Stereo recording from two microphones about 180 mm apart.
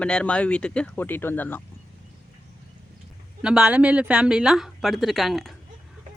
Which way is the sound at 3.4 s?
5° right (ahead or behind).